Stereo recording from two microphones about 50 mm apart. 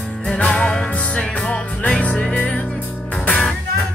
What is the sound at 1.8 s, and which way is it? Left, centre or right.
Music, left.